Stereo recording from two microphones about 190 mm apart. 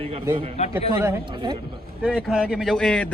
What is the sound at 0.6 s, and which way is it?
Speech, 35° left (ahead or behind).